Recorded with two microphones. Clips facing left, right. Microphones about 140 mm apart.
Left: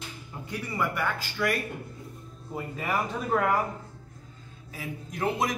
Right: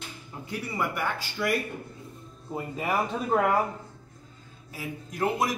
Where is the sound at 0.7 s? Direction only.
10° right (ahead or behind).